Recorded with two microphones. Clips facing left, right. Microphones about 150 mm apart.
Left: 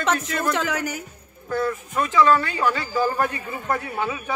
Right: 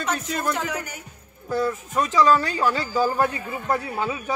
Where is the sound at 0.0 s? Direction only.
90° left.